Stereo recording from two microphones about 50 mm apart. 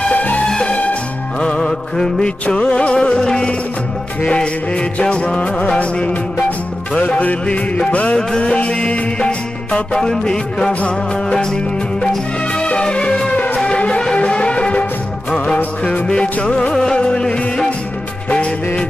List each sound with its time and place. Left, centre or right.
0.0 s music: left
10.7 s music: left
11.3 s music: centre